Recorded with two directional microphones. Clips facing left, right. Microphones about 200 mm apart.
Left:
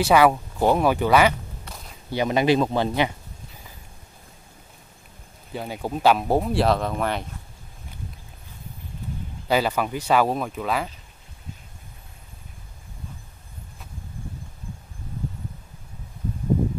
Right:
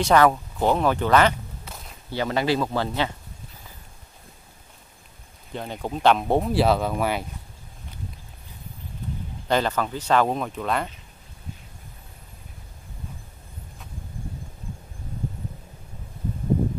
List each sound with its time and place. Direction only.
0.0 s speech: 10° left (ahead or behind)
1.6 s a sound: centre (ahead or behind)
2.0 s speech: 15° left (ahead or behind)
5.5 s speech: 5° left (ahead or behind)
9.5 s speech: 10° left (ahead or behind)